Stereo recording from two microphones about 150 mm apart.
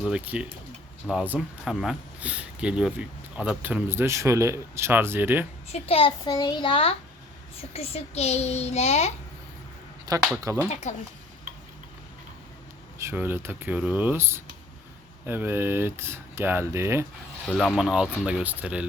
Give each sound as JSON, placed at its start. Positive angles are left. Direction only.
{"t": 0.0, "sound": "speech", "side_deg": -5}
{"t": 5.9, "sound": "a child's voice", "side_deg": 40}
{"t": 6.2, "sound": "a child's voice", "side_deg": 25}
{"t": 10.1, "sound": "speech", "side_deg": -25}
{"t": 10.7, "sound": "a child's voice", "side_deg": 50}
{"t": 13.0, "sound": "speech", "side_deg": -15}
{"t": 17.4, "sound": "speech", "side_deg": 0}